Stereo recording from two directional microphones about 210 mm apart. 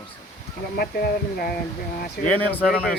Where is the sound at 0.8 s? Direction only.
45° left (ahead or behind).